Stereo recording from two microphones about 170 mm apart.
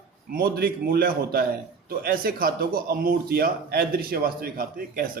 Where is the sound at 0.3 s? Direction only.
60° right (ahead or behind).